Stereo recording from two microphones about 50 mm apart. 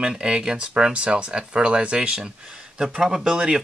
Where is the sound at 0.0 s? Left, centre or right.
Centre.